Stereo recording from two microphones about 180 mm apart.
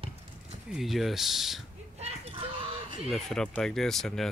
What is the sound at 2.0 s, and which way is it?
Chicken, 35° right (ahead or behind).